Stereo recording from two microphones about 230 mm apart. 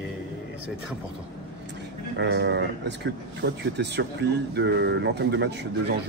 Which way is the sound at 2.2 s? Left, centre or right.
Right.